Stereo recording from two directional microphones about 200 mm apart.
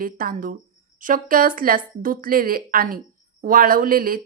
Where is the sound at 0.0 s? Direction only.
45° right (ahead or behind).